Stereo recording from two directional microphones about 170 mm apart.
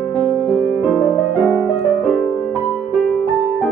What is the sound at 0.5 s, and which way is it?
Music, 5° right (ahead or behind).